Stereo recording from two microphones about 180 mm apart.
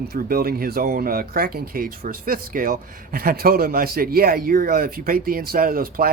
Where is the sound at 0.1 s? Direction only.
55° right (ahead or behind).